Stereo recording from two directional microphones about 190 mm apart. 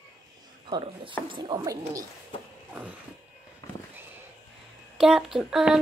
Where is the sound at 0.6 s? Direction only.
25° right (ahead or behind).